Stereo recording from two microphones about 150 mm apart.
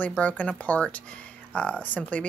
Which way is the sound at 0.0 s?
10° left (ahead or behind).